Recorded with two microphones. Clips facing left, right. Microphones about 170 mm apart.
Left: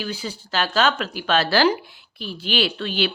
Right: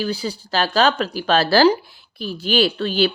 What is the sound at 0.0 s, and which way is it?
A woman's voice, 35° right (ahead or behind).